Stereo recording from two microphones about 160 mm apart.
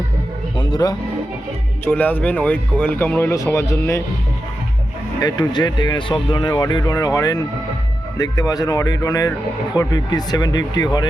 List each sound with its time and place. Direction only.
0.5 s speech: 30° left (ahead or behind)
1.8 s speech: 10° left (ahead or behind)
5.2 s speech: 25° left (ahead or behind)